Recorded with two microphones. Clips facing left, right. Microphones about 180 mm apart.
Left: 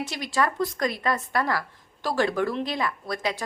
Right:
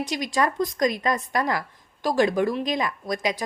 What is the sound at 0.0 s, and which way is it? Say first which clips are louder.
A woman's voice: right 2 dB; 15° right (ahead or behind).